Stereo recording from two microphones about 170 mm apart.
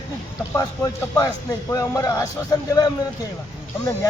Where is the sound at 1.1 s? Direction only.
20° left (ahead or behind).